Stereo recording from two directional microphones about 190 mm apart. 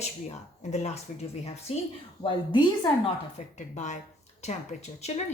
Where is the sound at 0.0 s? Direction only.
35° left (ahead or behind).